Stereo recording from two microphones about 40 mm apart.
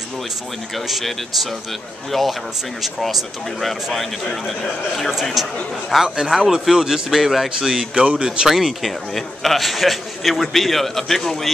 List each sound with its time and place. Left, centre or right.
0.7 s a man's voice: centre
5.3 s a man's voice: centre
7.6 s a man's voice: right
8.5 s a man's voice: centre